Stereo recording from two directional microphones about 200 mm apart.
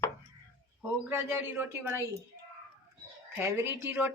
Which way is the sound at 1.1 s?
10° right (ahead or behind).